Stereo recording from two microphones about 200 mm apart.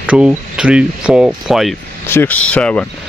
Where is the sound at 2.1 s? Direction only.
10° left (ahead or behind).